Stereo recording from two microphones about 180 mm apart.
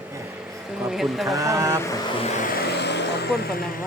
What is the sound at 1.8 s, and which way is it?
Speech, 20° left (ahead or behind).